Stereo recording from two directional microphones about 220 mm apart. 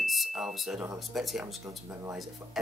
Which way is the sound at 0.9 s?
Centre (ahead or behind).